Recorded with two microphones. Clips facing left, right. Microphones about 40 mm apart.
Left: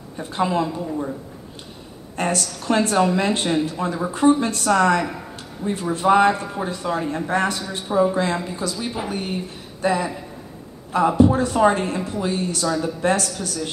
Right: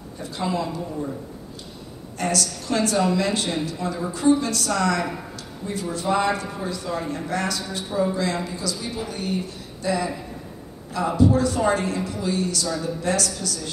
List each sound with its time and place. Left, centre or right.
0.2 s speech: left
2.1 s speech: left